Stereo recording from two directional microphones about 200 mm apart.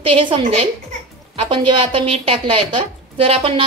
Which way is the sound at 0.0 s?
25° right (ahead or behind).